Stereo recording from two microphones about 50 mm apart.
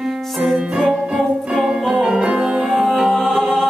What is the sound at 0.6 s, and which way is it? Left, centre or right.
Music, centre.